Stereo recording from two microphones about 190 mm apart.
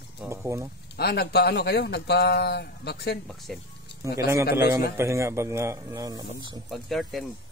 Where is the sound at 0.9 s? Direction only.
55° left (ahead or behind).